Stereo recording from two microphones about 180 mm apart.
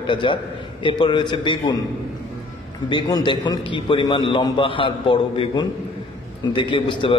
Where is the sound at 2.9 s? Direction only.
25° left (ahead or behind).